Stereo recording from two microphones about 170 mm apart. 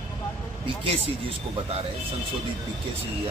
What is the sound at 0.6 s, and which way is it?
Speech, 30° right (ahead or behind).